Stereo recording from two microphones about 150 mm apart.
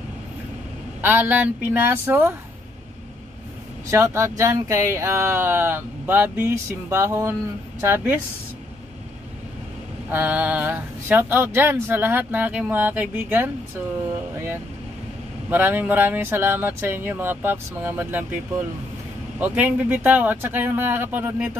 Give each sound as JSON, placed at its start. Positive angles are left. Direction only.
{"t": 1.0, "sound": "speech", "side_deg": -10}
{"t": 3.8, "sound": "speech", "side_deg": -20}
{"t": 10.1, "sound": "speech", "side_deg": -10}
{"t": 15.5, "sound": "speech", "side_deg": -10}
{"t": 19.4, "sound": "speech", "side_deg": -10}